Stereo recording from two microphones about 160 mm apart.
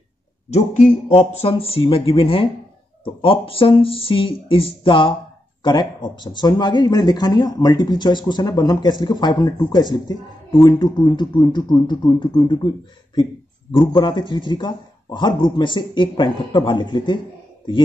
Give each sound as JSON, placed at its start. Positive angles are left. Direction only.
{"t": 1.0, "sound": "speech", "side_deg": 35}